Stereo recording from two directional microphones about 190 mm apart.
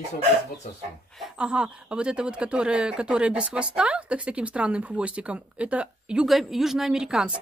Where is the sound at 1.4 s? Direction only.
5° right (ahead or behind).